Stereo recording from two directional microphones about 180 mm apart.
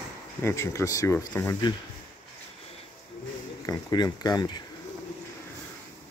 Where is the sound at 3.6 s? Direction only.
20° left (ahead or behind).